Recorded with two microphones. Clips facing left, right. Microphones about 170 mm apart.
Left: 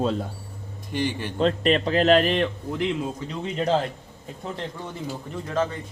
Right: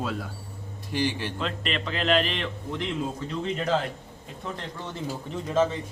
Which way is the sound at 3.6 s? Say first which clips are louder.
Left 5 dB; 30° left (ahead or behind).